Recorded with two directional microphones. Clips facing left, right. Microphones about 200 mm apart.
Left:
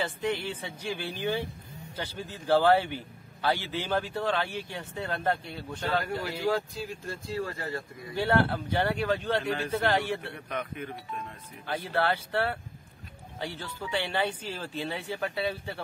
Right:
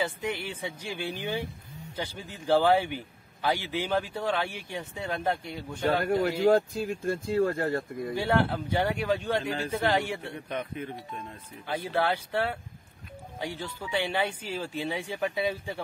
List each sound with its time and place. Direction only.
0.0 s speech: 10° right (ahead or behind)
6.9 s speech: 55° right (ahead or behind)
8.1 s speech: 15° right (ahead or behind)
10.5 s speech: 30° right (ahead or behind)
11.6 s speech: 10° right (ahead or behind)